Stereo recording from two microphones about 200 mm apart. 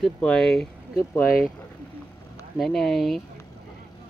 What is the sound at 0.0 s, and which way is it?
Speech, centre (ahead or behind).